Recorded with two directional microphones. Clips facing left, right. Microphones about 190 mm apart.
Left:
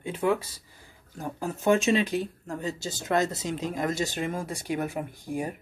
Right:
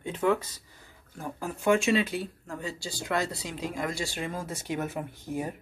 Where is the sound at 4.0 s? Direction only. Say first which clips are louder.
Left 4 dB; 20° left (ahead or behind).